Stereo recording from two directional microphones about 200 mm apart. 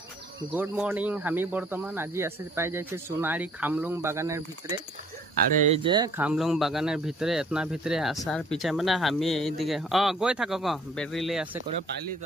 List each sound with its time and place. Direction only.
0.5 s speech: 10° right (ahead or behind)
5.9 s speech: 20° right (ahead or behind)
6.1 s speech: 5° right (ahead or behind)